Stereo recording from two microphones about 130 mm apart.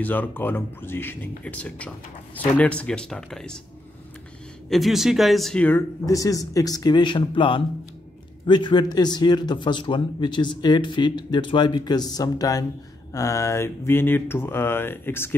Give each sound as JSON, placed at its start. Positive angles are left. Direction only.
{"t": 0.0, "sound": "speech", "side_deg": 15}
{"t": 4.6, "sound": "speech", "side_deg": 0}
{"t": 6.0, "sound": "a man's voice", "side_deg": 25}